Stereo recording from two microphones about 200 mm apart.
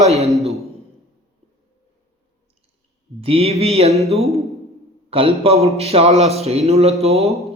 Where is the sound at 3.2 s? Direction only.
30° right (ahead or behind).